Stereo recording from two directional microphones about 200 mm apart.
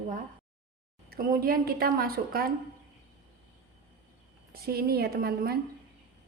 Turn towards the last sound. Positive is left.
turn(degrees=-50)  # may be behind; listen again after turning